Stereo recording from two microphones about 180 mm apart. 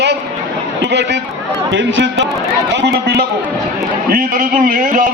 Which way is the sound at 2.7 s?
65° right (ahead or behind).